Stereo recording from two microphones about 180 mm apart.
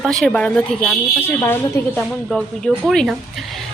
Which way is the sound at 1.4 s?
15° left (ahead or behind).